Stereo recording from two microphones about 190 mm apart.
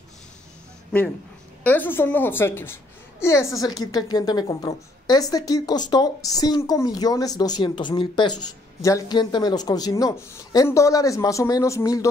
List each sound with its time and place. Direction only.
1.6 s a child's voice: 10° left (ahead or behind)